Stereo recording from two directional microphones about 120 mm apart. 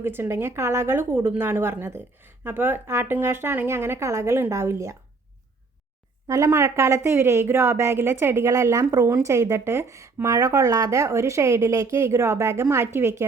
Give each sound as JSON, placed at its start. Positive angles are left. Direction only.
{"t": 0.0, "sound": "a woman's voice", "side_deg": -20}
{"t": 6.2, "sound": "a woman's voice", "side_deg": -25}